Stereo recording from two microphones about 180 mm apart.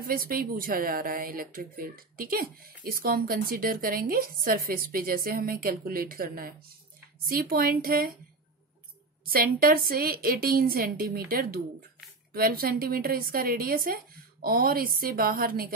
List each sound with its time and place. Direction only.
0.0 s a woman's voice: 55° right (ahead or behind)
9.2 s a woman's voice: 55° right (ahead or behind)